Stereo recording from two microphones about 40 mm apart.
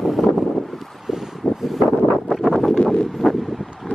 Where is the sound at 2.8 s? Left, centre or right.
Left.